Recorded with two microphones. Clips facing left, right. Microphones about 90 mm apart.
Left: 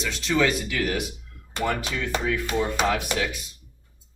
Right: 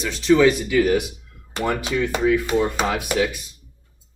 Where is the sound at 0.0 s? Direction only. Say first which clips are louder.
Right 8 dB; 10° right (ahead or behind).